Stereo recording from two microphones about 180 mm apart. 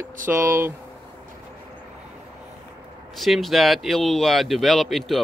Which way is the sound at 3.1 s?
Centre (ahead or behind).